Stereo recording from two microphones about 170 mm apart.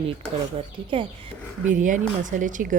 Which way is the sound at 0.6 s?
30° right (ahead or behind).